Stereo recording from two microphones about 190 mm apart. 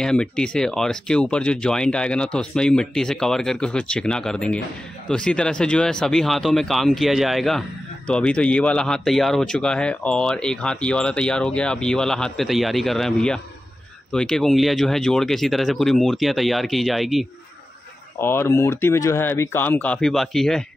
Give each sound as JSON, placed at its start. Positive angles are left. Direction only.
{"t": 0.0, "sound": "speech", "side_deg": 5}
{"t": 18.2, "sound": "speech", "side_deg": 10}